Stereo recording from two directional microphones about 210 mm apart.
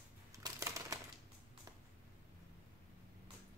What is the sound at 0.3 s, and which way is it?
Shuffling cards, 15° right (ahead or behind).